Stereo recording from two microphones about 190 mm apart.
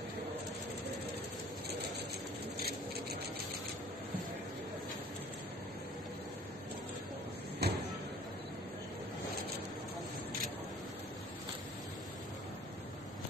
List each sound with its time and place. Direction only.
7.6 s vehicle: 55° right (ahead or behind)